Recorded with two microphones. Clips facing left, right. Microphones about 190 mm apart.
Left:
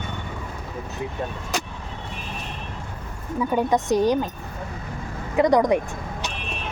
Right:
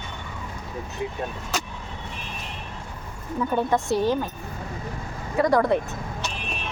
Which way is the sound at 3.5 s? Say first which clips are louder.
Left 3 dB; 15° left (ahead or behind).